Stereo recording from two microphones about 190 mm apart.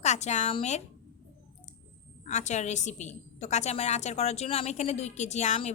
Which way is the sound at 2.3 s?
40° left (ahead or behind).